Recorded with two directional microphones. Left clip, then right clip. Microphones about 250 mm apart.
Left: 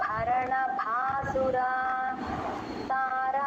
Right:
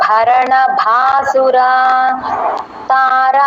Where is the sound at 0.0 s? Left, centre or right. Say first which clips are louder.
Right 18 dB; right.